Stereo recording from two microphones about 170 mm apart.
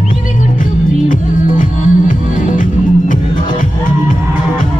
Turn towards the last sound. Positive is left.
turn(degrees=50)  # may be behind; listen again after turning